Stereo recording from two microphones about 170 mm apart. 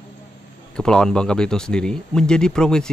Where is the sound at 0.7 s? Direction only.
5° left (ahead or behind).